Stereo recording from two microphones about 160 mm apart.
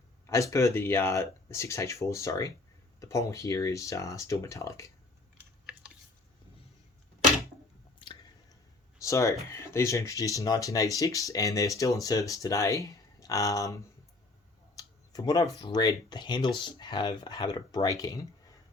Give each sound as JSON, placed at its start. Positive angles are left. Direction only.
{"t": 0.3, "sound": "speech", "side_deg": 20}
{"t": 7.9, "sound": "squish", "side_deg": 30}
{"t": 9.0, "sound": "a sound", "side_deg": 20}
{"t": 9.5, "sound": "speech", "side_deg": 15}
{"t": 14.8, "sound": "a sound", "side_deg": 25}
{"t": 15.6, "sound": "speech", "side_deg": 25}